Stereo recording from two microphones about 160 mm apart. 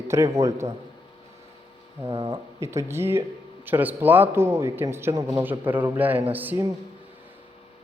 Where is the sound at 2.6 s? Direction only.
15° right (ahead or behind).